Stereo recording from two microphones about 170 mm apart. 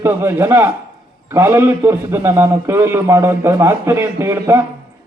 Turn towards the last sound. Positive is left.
turn(degrees=-15)  # may be behind; listen again after turning